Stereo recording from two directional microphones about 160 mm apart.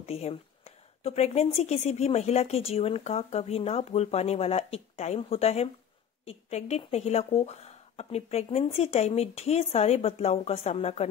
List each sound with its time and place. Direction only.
0.0 s a woman's voice: 40° left (ahead or behind)